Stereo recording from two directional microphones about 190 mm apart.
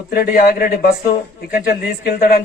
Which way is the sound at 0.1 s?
50° left (ahead or behind).